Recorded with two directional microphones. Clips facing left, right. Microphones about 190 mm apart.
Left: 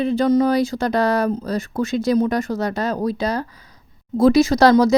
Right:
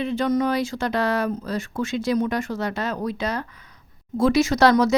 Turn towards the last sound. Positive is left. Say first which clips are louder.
# left 4 dB
turn(degrees=35)  # may be behind; listen again after turning